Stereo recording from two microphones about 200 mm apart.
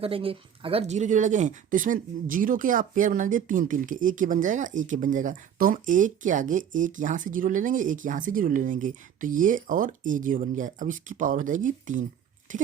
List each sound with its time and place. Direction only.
0.0 s speech: 25° right (ahead or behind)